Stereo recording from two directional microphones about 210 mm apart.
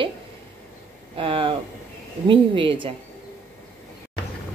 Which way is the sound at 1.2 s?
25° right (ahead or behind).